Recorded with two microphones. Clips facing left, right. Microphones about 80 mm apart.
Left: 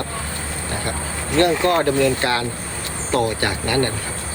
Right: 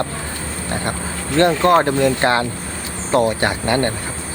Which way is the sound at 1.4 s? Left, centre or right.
Right.